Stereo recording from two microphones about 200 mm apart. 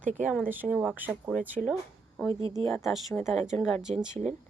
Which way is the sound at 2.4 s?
25° right (ahead or behind).